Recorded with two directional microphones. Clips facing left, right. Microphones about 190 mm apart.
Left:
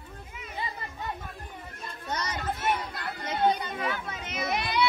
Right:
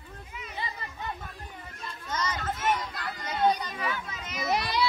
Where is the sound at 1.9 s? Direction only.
65° left (ahead or behind).